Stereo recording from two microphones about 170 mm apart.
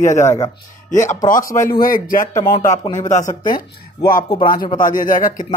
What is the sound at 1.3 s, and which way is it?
Speech, 50° left (ahead or behind).